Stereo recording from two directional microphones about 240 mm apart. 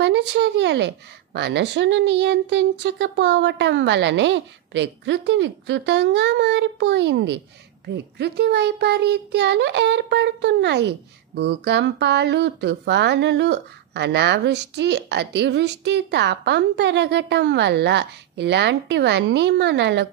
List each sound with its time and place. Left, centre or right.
0.0 s a child's voice: right